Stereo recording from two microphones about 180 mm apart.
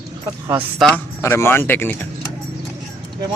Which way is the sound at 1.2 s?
15° left (ahead or behind).